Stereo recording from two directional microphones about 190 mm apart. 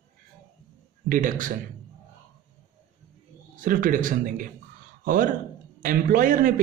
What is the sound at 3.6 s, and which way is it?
Speech, 45° right (ahead or behind).